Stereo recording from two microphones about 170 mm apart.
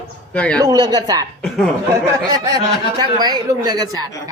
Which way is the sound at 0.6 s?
20° right (ahead or behind).